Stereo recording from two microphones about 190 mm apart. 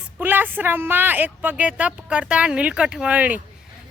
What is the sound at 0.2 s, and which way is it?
Speech, 10° right (ahead or behind).